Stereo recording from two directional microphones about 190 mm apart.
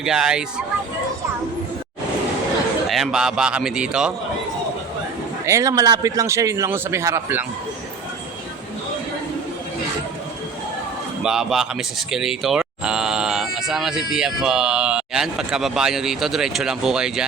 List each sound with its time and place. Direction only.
0.0 s speech: 5° right (ahead or behind)
2.9 s speech: centre (ahead or behind)
5.5 s speech: 15° right (ahead or behind)
11.2 s speech: 5° right (ahead or behind)